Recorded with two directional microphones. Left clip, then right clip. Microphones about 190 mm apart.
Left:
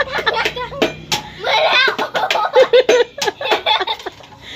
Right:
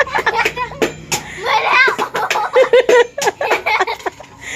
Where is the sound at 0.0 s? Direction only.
20° right (ahead or behind).